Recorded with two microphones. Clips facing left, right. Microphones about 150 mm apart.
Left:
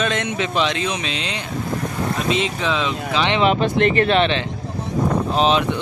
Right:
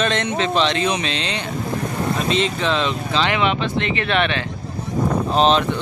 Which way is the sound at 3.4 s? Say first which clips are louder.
Left 4 dB; 45° left (ahead or behind).